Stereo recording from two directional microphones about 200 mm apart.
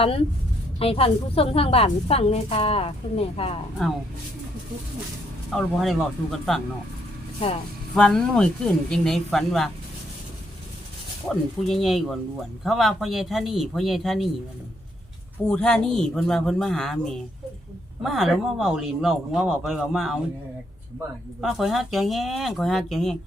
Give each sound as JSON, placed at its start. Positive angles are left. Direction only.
{"t": 0.8, "sound": "a woman's voice", "side_deg": 30}
{"t": 3.8, "sound": "speech", "side_deg": 0}
{"t": 5.5, "sound": "speech", "side_deg": 0}
{"t": 7.9, "sound": "speech", "side_deg": 5}
{"t": 11.3, "sound": "speech", "side_deg": 0}
{"t": 15.4, "sound": "speech", "side_deg": 5}
{"t": 21.4, "sound": "speech", "side_deg": 0}